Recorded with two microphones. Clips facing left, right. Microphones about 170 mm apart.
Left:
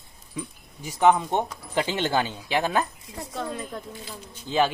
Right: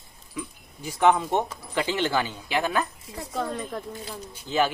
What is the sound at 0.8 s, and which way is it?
Speech, 15° left (ahead or behind).